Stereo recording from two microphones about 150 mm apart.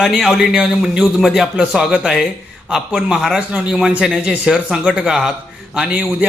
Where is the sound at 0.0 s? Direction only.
Centre (ahead or behind).